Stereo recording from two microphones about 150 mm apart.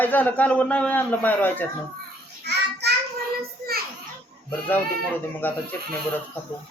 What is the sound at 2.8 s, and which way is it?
Child singing, 90° right.